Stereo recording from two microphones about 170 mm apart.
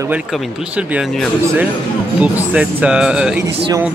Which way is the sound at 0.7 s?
10° right (ahead or behind).